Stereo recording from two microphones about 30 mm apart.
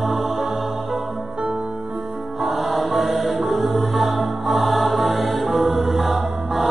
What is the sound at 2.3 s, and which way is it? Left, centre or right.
Music, centre.